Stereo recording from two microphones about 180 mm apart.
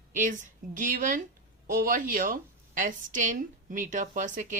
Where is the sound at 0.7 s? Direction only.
45° right (ahead or behind).